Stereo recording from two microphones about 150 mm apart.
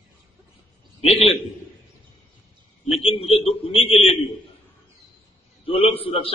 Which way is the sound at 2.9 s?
40° left (ahead or behind).